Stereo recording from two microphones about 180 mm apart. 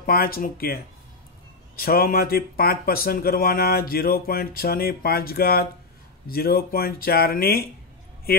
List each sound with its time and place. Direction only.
0.0 s speech: 55° left (ahead or behind)
1.8 s speech: 55° left (ahead or behind)